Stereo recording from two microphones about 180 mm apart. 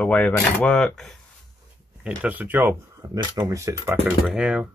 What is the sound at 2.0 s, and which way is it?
Speech, 10° right (ahead or behind).